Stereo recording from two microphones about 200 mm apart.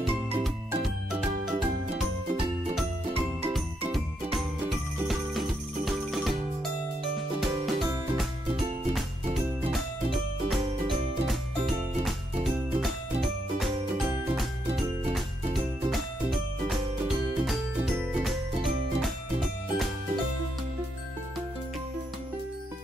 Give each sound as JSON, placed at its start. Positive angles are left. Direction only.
{"t": 0.8, "sound": "music", "side_deg": 0}
{"t": 3.9, "sound": "jingle bell", "side_deg": 0}
{"t": 7.3, "sound": "music", "side_deg": 0}
{"t": 8.5, "sound": "music", "side_deg": -25}
{"t": 9.3, "sound": "music", "side_deg": 0}
{"t": 12.4, "sound": "music", "side_deg": 0}